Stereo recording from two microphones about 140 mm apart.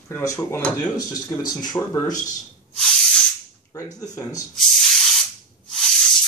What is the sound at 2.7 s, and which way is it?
Spray, 5° left (ahead or behind).